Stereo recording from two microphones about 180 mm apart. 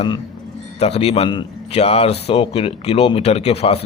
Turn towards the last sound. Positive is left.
turn(degrees=35)  # may be behind; listen again after turning